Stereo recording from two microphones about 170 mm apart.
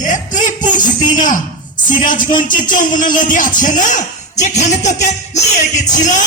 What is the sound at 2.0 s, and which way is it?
Speech, 50° left (ahead or behind).